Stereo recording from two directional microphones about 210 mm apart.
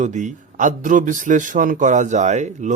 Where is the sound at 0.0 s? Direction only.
35° right (ahead or behind).